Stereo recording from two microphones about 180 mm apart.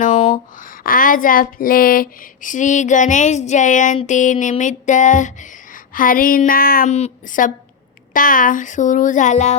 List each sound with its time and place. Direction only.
0.0 s speech: 40° left (ahead or behind); by 6.8 s 55° left (ahead or behind)
6.8 s child singing: 40° left (ahead or behind)